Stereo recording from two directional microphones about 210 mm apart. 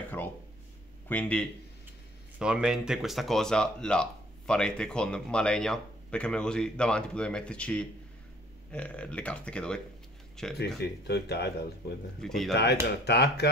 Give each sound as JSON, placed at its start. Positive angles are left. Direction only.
{"t": 1.0, "sound": "speech", "side_deg": 5}
{"t": 2.3, "sound": "speech", "side_deg": -5}
{"t": 10.8, "sound": "speech", "side_deg": 50}
{"t": 12.2, "sound": "speech", "side_deg": 0}
{"t": 12.8, "sound": "speech", "side_deg": 50}